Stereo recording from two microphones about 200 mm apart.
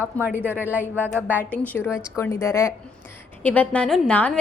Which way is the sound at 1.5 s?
10° left (ahead or behind).